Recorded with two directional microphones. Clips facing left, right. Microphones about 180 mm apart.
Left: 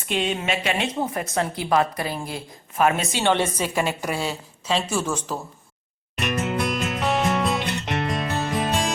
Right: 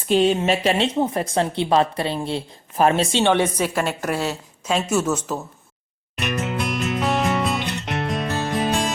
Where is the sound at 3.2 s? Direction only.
15° right (ahead or behind).